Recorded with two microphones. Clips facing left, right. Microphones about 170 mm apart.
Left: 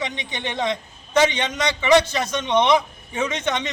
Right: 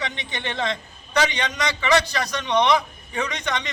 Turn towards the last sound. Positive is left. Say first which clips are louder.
# left 4 dB
turn(degrees=20)  # may be behind; listen again after turning